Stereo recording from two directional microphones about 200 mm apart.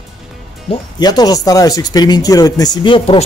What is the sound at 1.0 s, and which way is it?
Speech, 20° left (ahead or behind).